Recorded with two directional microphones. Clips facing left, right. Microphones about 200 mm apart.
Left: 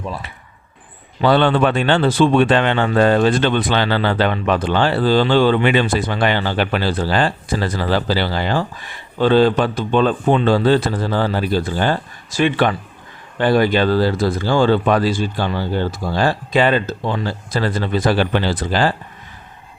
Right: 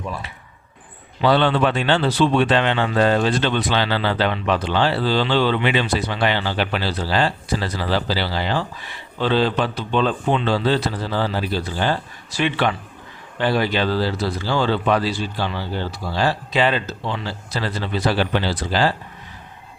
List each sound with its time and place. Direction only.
1.2 s speech: 50° left (ahead or behind)